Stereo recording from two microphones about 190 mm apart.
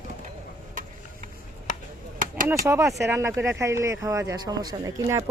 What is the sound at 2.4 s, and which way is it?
Speech, 15° right (ahead or behind).